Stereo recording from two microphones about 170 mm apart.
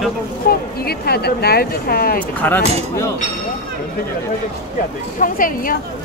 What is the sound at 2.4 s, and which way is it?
Speech, 15° left (ahead or behind).